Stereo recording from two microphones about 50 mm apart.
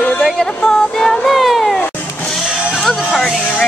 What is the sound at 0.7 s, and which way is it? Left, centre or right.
Music, centre.